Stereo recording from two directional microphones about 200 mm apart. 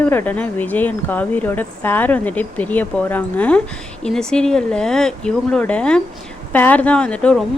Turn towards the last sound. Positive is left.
turn(degrees=5)  # may be behind; listen again after turning